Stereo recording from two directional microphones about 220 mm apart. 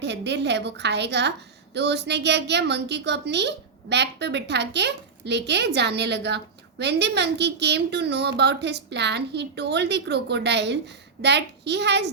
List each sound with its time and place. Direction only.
0.0 s a woman's voice: 50° right (ahead or behind)